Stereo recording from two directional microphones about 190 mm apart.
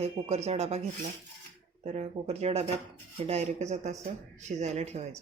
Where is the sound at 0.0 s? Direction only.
35° right (ahead or behind).